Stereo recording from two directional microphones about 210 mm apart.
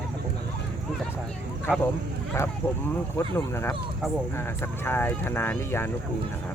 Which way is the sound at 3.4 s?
10° left (ahead or behind).